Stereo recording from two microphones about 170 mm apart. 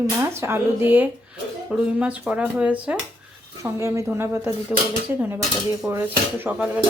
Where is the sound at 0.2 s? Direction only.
15° right (ahead or behind).